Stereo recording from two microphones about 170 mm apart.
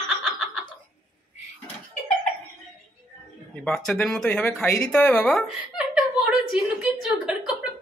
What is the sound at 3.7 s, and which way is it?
Speech, 5° left (ahead or behind).